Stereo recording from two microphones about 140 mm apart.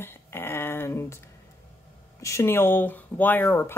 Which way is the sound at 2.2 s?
20° left (ahead or behind).